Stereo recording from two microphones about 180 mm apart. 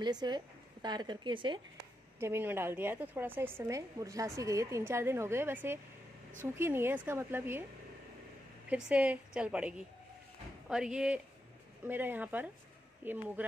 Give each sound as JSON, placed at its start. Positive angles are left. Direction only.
{"t": 0.0, "sound": "a woman's voice", "side_deg": -25}
{"t": 2.1, "sound": "a woman's voice", "side_deg": -15}
{"t": 8.6, "sound": "a woman's voice", "side_deg": -5}